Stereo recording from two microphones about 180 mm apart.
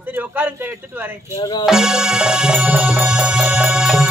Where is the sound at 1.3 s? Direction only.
20° left (ahead or behind).